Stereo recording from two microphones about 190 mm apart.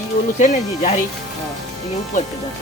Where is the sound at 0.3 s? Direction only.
40° left (ahead or behind).